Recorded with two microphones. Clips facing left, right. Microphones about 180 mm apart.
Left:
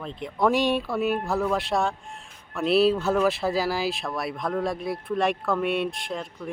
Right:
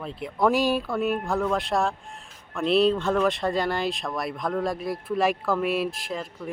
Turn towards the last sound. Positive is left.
turn(degrees=0)  # may be behind; listen again after turning